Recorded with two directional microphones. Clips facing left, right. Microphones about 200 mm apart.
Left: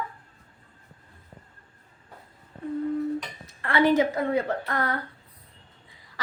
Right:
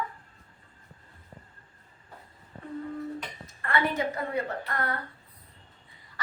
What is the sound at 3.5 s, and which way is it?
A woman's voice, 85° left.